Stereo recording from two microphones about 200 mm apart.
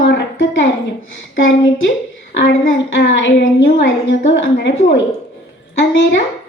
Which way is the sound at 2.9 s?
65° left (ahead or behind).